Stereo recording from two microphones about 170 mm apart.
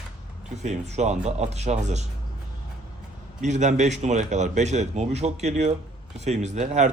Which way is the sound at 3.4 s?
45° right (ahead or behind).